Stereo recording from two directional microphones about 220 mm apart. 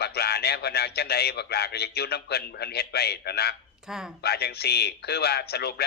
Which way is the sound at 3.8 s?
Centre (ahead or behind).